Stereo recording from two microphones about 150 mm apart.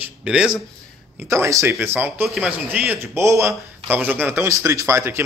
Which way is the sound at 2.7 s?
15° right (ahead or behind).